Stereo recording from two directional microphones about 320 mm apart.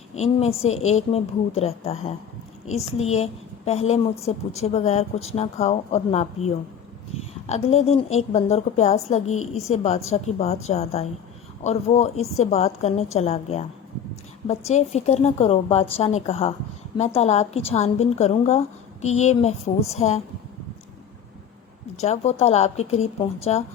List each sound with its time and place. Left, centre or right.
0.2 s a woman's voice: centre
21.9 s a woman's voice: left